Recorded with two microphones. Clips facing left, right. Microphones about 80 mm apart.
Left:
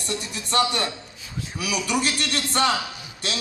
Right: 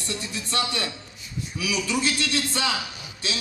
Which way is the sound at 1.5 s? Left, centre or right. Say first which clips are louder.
Left 1 dB; left.